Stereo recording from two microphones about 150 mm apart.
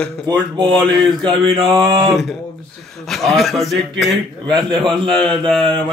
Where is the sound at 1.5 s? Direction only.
35° right (ahead or behind).